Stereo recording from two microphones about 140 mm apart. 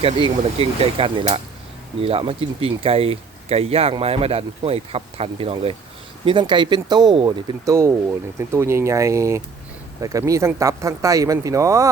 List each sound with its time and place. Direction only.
0.0 s speech: 40° right (ahead or behind); by 11.9 s 20° right (ahead or behind)